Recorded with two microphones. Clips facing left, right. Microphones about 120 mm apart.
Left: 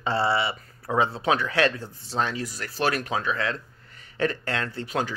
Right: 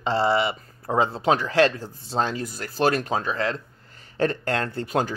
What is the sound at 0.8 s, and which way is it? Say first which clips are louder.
Speech: right 2 dB; 40° right (ahead or behind).